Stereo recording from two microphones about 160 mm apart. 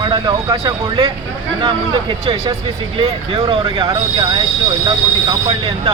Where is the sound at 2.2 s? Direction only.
30° right (ahead or behind).